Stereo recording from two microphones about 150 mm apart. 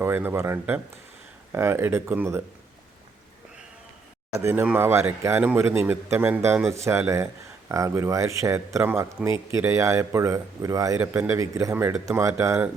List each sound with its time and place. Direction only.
0.0 s a man's voice: 15° right (ahead or behind)
4.4 s a man's voice: 15° right (ahead or behind)